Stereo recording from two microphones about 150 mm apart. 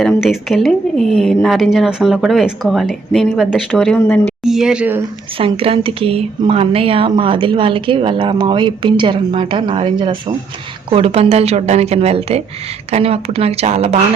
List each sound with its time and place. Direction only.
0.0 s speech: centre (ahead or behind)
5.4 s speech: 40° right (ahead or behind)